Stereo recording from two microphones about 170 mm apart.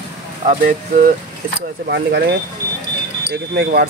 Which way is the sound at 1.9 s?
75° right (ahead or behind).